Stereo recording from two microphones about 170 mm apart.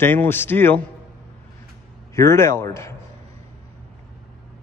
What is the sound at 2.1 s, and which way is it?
Speech, 15° left (ahead or behind).